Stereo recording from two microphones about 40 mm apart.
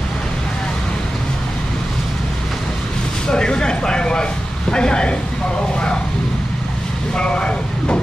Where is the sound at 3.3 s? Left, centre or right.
Left.